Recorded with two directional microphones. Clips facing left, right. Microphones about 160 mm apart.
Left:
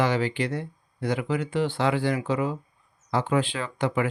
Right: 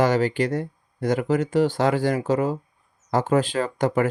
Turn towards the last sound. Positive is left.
turn(degrees=-45)  # may be behind; listen again after turning